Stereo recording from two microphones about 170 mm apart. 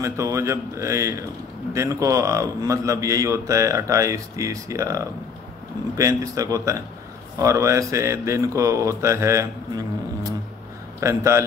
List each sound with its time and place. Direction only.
0.0 s a man's voice: 20° right (ahead or behind)